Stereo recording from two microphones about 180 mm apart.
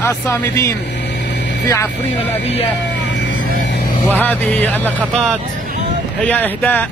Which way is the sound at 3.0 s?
80° left.